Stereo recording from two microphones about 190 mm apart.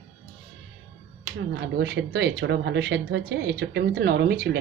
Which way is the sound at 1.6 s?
65° right (ahead or behind).